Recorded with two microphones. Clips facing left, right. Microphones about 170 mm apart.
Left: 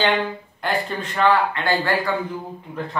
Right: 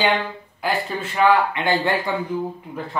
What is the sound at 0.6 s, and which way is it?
A woman's voice, 5° right (ahead or behind).